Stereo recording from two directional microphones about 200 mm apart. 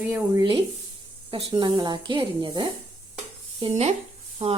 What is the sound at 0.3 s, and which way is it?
A woman's voice, 25° right (ahead or behind).